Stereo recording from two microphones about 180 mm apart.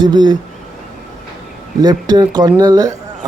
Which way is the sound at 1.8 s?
20° right (ahead or behind).